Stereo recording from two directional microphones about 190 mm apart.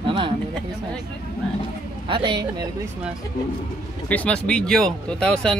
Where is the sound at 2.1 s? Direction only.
25° right (ahead or behind).